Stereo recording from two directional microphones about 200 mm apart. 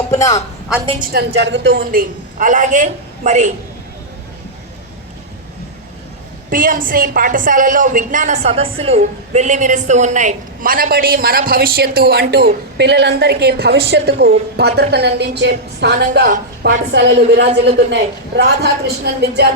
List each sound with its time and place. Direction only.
0.1 s a sound: 15° left (ahead or behind)
0.9 s a woman's voice: 55° right (ahead or behind); by 3.5 s 35° right (ahead or behind)
6.5 s a woman's voice: 45° right (ahead or behind)
16.2 s a woman's voice: 40° right (ahead or behind)
16.9 s a woman's voice: 55° right (ahead or behind)